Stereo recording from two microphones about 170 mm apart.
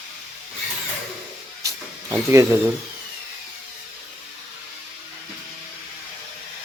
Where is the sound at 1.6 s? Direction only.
15° right (ahead or behind).